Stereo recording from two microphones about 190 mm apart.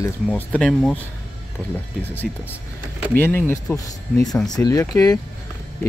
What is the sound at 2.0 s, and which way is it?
Speech, 10° left (ahead or behind).